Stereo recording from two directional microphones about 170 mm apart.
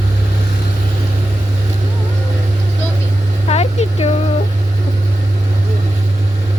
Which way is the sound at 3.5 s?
40° left (ahead or behind).